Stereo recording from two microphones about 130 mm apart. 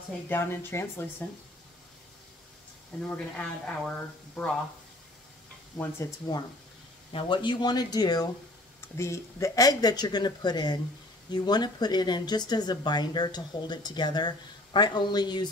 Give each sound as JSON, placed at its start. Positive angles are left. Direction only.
{"t": 0.3, "sound": "speech", "side_deg": 15}
{"t": 3.1, "sound": "speech", "side_deg": 10}
{"t": 5.8, "sound": "speech", "side_deg": 20}
{"t": 7.1, "sound": "speech", "side_deg": 40}